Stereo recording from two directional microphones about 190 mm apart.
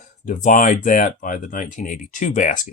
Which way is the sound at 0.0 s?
40° left (ahead or behind).